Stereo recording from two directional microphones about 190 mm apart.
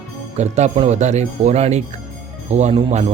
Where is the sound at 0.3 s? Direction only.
35° right (ahead or behind).